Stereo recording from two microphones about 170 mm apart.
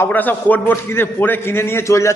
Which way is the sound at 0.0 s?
10° left (ahead or behind).